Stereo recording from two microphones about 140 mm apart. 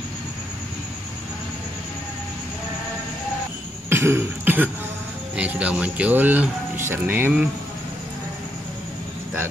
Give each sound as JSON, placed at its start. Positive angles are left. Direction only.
{"t": 3.9, "sound": "cough", "side_deg": -20}
{"t": 5.3, "sound": "speech", "side_deg": -10}